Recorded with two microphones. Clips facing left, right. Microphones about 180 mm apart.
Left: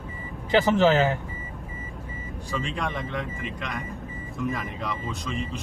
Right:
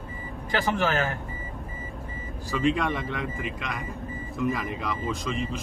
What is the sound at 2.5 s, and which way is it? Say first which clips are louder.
Speech: right 6 dB; centre (ahead or behind).